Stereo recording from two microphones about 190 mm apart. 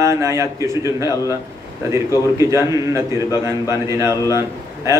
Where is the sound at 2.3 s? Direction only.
15° right (ahead or behind).